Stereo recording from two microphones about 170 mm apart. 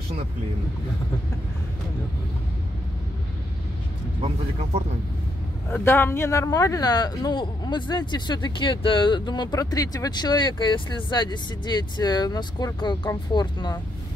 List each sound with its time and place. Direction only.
5.7 s speech: 10° left (ahead or behind)